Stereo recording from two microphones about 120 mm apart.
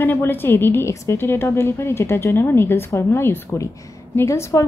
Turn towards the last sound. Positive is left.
turn(degrees=25)  # may be behind; listen again after turning